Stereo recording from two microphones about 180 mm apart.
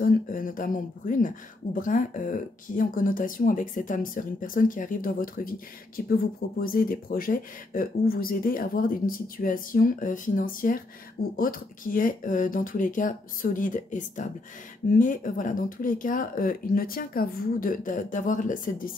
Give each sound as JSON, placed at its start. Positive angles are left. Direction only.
{"t": 0.0, "sound": "speech", "side_deg": 50}